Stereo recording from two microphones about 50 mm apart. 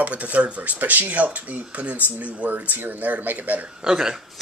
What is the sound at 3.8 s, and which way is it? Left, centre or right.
Speech, centre.